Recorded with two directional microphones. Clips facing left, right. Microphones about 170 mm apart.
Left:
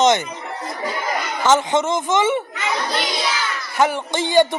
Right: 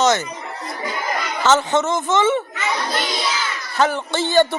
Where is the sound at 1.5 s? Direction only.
15° left (ahead or behind).